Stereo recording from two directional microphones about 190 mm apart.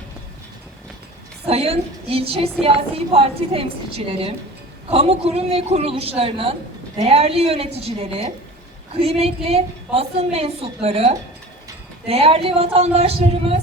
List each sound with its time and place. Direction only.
1.5 s a woman's voice: 30° right (ahead or behind)